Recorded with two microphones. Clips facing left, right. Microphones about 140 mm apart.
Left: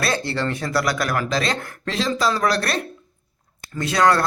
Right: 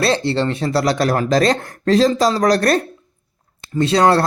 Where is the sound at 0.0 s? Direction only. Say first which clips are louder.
Right 6 dB; 25° right (ahead or behind); by 2.8 s 45° right (ahead or behind).